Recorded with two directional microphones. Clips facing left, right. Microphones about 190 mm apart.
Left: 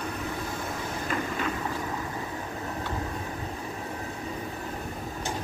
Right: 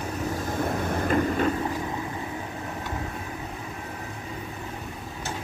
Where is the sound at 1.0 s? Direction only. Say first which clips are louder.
Right 7 dB; 45° right (ahead or behind).